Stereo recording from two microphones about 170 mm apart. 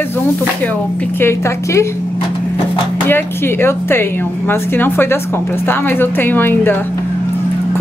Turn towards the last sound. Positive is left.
turn(degrees=10)  # may be behind; listen again after turning